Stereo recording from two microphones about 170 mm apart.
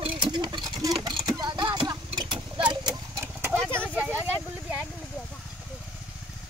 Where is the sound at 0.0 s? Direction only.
25° right (ahead or behind).